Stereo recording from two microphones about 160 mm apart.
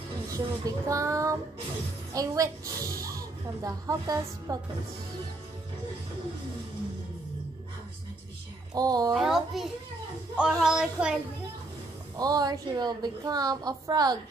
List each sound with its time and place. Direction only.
0.3 s a woman's voice: 20° right (ahead or behind)
8.7 s a woman's voice: 25° right (ahead or behind)
9.1 s a child's voice: centre (ahead or behind)
12.2 s a woman's voice: 25° right (ahead or behind)